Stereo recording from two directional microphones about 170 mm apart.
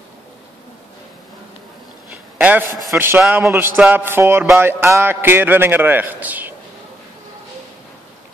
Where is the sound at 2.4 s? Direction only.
10° right (ahead or behind).